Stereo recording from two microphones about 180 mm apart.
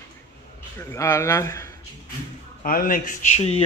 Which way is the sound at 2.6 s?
50° left (ahead or behind).